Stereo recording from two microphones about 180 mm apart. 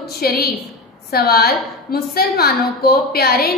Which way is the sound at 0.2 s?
60° left (ahead or behind).